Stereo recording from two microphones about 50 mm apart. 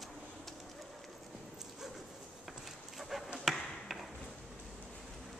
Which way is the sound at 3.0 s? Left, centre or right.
Centre.